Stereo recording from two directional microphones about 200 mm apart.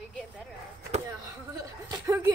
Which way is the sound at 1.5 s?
15° right (ahead or behind).